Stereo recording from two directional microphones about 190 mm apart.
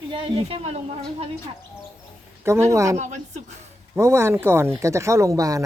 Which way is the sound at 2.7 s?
15° right (ahead or behind).